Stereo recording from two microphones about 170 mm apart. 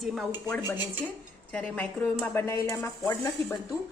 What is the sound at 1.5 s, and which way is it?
A woman's voice, 5° left (ahead or behind).